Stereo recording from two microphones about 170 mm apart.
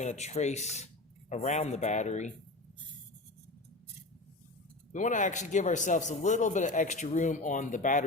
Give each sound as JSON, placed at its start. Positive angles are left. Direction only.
{"t": 0.0, "sound": "a man's voice", "side_deg": 40}
{"t": 4.9, "sound": "a man's voice", "side_deg": 45}